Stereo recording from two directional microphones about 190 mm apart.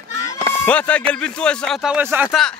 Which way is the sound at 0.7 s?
5° left (ahead or behind).